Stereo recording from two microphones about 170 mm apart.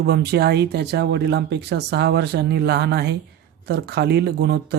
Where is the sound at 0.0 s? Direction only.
75° right (ahead or behind).